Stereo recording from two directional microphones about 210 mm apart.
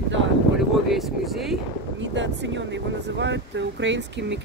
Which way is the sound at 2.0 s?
60° right (ahead or behind).